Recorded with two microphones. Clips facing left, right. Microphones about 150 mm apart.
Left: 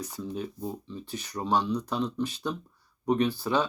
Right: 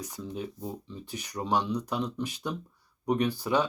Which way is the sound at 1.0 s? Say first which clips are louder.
Left 1 dB; 15° right (ahead or behind).